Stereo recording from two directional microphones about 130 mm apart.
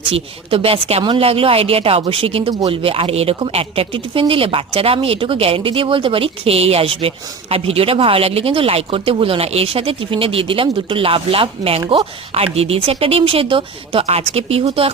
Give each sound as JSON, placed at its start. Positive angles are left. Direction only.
{"t": 0.1, "sound": "speech", "side_deg": -45}